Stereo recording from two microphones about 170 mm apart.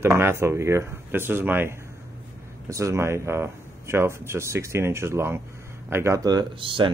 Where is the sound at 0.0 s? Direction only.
15° right (ahead or behind).